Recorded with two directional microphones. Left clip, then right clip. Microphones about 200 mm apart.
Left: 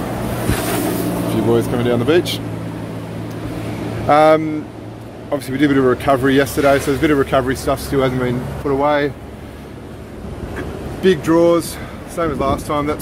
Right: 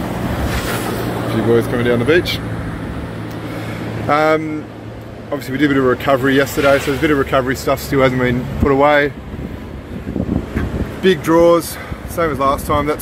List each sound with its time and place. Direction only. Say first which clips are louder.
0.5 s boat: left 3 dB; 60° left (ahead or behind)
1.5 s speech: right 3 dB; centre (ahead or behind)
4.1 s speech: left 3 dB; 10° left (ahead or behind); by 8.9 s 10° right (ahead or behind)
11.0 s speech: right 1 dB; centre (ahead or behind)